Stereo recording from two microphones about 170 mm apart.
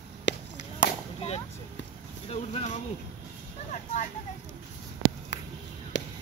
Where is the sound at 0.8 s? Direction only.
40° left (ahead or behind).